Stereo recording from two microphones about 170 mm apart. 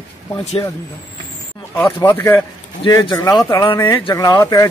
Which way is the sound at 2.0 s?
15° left (ahead or behind).